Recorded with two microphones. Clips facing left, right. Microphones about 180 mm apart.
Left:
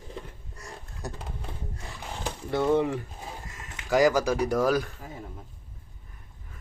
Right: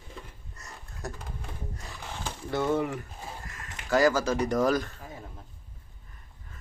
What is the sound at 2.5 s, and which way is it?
Speech, 30° left (ahead or behind).